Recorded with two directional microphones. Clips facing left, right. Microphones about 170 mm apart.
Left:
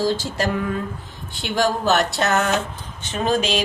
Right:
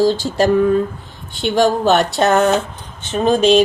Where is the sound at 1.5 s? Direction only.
25° right (ahead or behind).